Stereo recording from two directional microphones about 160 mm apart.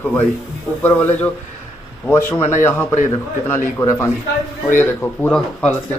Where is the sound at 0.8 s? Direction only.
10° left (ahead or behind).